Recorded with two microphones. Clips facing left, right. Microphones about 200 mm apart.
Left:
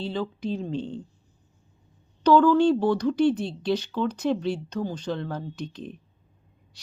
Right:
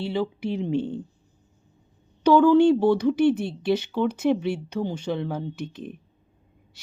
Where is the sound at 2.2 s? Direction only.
10° right (ahead or behind).